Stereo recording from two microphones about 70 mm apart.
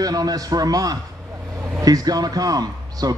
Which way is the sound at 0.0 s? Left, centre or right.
Right.